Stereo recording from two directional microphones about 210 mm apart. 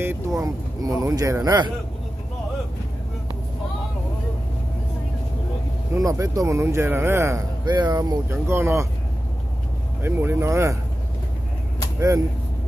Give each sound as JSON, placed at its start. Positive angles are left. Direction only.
{"t": 0.0, "sound": "a man's voice", "side_deg": -15}
{"t": 5.9, "sound": "a man's voice", "side_deg": -15}
{"t": 10.0, "sound": "a man's voice", "side_deg": -10}